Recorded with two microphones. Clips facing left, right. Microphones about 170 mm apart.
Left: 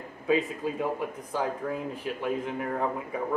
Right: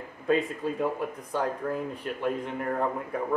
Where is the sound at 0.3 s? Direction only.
Centre (ahead or behind).